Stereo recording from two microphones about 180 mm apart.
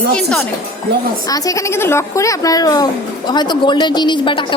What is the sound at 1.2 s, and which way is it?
A woman's voice, 20° left (ahead or behind).